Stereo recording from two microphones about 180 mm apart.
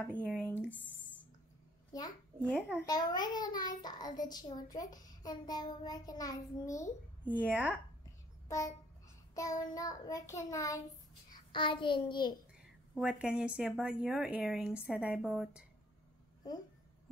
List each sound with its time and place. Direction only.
0.1 s child singing: 5° left (ahead or behind)
1.9 s a child's voice: 20° left (ahead or behind)
2.8 s child singing: 20° left (ahead or behind)
7.3 s a woman's voice: 10° right (ahead or behind)
8.5 s a sound: 20° left (ahead or behind)
9.3 s child singing: 20° left (ahead or behind)
11.2 s a child's voice: 25° left (ahead or behind)
12.9 s speech: 5° right (ahead or behind)